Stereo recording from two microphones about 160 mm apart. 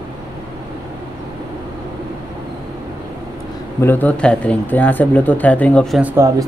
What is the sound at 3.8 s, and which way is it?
Speech, 10° left (ahead or behind).